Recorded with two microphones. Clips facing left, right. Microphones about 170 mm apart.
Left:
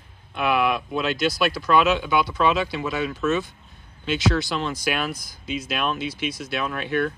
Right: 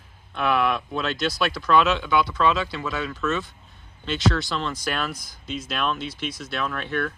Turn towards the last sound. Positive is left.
turn(degrees=5)  # may be behind; listen again after turning